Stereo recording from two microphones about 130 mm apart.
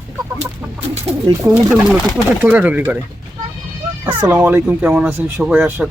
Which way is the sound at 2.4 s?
10° right (ahead or behind).